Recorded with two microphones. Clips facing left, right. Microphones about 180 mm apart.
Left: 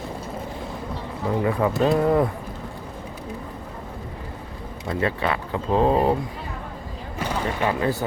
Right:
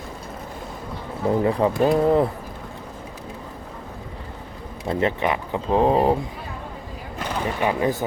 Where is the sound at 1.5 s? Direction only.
25° right (ahead or behind).